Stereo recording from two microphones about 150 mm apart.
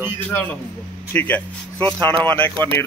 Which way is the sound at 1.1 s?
10° left (ahead or behind).